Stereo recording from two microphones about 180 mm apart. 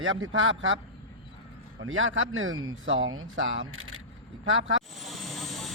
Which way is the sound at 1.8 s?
90° right.